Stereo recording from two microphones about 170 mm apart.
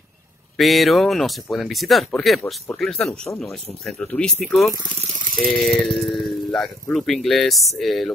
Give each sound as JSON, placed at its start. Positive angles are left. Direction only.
{"t": 0.6, "sound": "speech", "side_deg": 0}
{"t": 5.0, "sound": "rattle", "side_deg": -45}
{"t": 5.4, "sound": "speech", "side_deg": 0}